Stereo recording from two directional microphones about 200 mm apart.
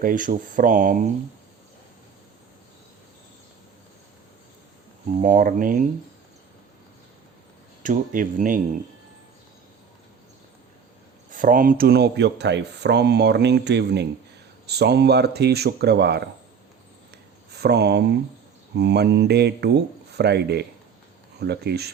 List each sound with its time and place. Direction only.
0.0 s speech: 40° right (ahead or behind)
5.2 s speech: 40° right (ahead or behind)
7.8 s speech: 40° right (ahead or behind)
11.3 s speech: 40° right (ahead or behind)
17.5 s speech: 55° right (ahead or behind)